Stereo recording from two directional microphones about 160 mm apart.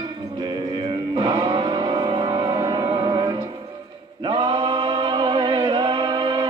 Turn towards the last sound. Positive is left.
turn(degrees=-30)  # may be behind; listen again after turning